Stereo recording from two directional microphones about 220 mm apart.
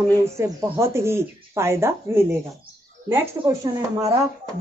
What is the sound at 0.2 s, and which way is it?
A woman's voice, 10° right (ahead or behind).